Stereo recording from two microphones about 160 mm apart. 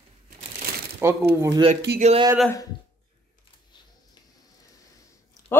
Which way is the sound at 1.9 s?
80° right.